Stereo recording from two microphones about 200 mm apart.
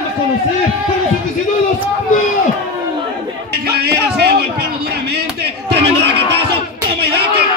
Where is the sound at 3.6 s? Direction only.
55° right (ahead or behind).